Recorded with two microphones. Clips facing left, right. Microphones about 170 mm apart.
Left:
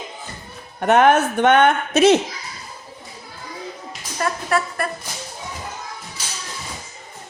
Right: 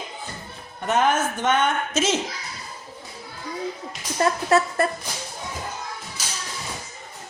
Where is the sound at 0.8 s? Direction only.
65° left (ahead or behind).